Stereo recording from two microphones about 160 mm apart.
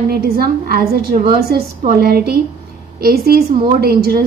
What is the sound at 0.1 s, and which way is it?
A woman's voice, 70° right (ahead or behind).